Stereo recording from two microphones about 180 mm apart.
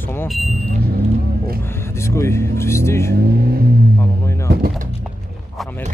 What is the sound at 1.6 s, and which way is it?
Speech, 15° left (ahead or behind).